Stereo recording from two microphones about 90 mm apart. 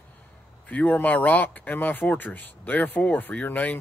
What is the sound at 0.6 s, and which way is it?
Speech, 15° left (ahead or behind).